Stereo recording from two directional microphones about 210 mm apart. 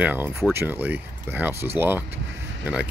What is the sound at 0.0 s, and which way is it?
Speech, 10° right (ahead or behind).